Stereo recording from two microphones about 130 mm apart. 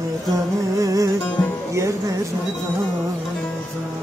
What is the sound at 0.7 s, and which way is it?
Music, 25° right (ahead or behind).